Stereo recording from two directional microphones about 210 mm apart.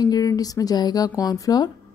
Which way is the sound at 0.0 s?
20° left (ahead or behind).